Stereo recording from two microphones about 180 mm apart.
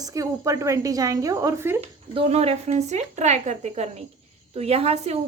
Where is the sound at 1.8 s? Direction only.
35° right (ahead or behind).